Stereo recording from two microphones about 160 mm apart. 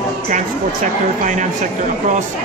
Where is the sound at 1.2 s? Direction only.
50° right (ahead or behind).